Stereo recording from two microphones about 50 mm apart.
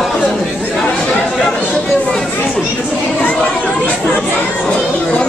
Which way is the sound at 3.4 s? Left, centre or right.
Left.